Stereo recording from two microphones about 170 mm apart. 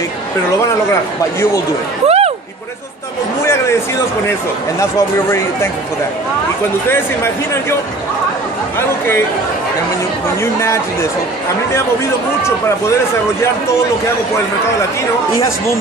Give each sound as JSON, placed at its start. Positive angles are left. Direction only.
{"t": 2.0, "sound": "a sound", "side_deg": -35}
{"t": 3.4, "sound": "speech", "side_deg": 15}
{"t": 4.7, "sound": "speech", "side_deg": 15}
{"t": 8.7, "sound": "speech", "side_deg": 15}
{"t": 10.4, "sound": "speech", "side_deg": 15}